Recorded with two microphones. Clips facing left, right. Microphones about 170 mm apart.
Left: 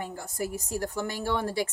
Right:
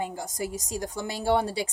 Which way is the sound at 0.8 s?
15° right (ahead or behind).